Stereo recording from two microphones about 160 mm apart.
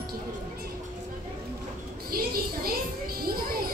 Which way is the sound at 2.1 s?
70° right (ahead or behind).